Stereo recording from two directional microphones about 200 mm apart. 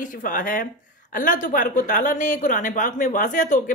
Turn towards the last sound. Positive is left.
turn(degrees=40)  # may be behind; listen again after turning